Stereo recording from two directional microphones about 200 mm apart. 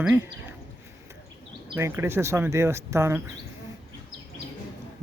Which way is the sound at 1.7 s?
15° right (ahead or behind).